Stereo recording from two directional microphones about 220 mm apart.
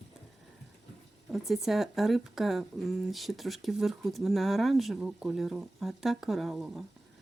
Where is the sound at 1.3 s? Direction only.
Centre (ahead or behind).